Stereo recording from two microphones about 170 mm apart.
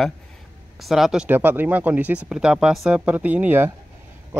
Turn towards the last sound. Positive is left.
turn(degrees=-10)  # may be behind; listen again after turning